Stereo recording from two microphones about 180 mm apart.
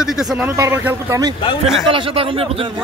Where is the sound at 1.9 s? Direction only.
30° right (ahead or behind).